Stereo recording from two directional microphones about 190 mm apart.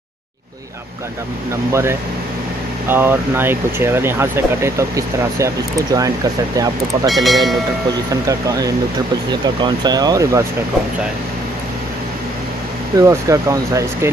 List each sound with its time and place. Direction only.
1.7 s speech: 15° right (ahead or behind)
7.1 s speech: centre (ahead or behind)
8.1 s speech: 20° right (ahead or behind)
12.9 s speech: 15° right (ahead or behind)